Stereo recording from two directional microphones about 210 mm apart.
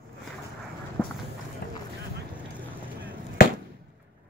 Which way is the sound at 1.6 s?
50° left (ahead or behind).